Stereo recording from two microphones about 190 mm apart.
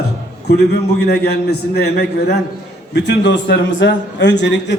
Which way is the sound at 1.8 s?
55° left (ahead or behind).